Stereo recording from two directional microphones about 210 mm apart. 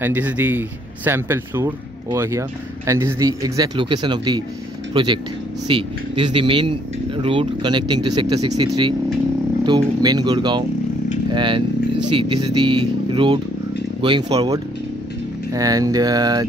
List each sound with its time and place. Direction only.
0.0 s speech: 10° right (ahead or behind)
10.0 s speech: 20° right (ahead or behind)